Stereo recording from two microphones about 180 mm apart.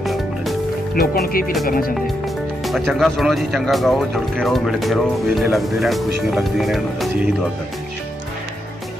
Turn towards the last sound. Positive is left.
turn(degrees=0)  # may be behind; listen again after turning